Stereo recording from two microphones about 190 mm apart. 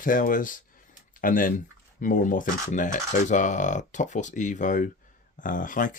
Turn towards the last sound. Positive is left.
turn(degrees=45)  # may be behind; listen again after turning